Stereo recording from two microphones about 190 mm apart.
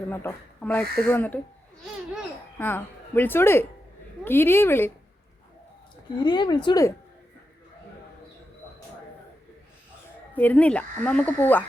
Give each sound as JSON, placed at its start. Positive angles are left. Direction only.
{"t": 0.1, "sound": "speech", "side_deg": 10}
{"t": 2.6, "sound": "speech", "side_deg": 10}
{"t": 6.1, "sound": "a woman's voice", "side_deg": 25}
{"t": 10.3, "sound": "speech", "side_deg": 10}